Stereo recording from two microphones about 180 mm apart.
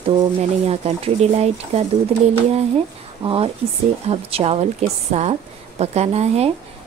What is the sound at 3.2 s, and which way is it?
A woman's voice, 30° right (ahead or behind).